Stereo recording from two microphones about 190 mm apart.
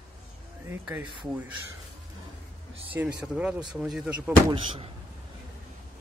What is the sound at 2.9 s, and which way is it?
Speech, 5° right (ahead or behind).